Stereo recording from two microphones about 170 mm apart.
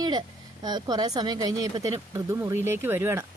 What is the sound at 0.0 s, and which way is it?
Speech, 25° right (ahead or behind).